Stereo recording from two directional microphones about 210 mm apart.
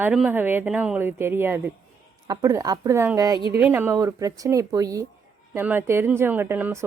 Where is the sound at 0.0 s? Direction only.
5° right (ahead or behind).